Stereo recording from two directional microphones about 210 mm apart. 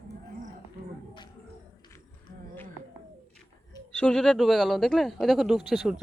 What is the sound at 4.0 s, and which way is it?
Speech, 5° left (ahead or behind).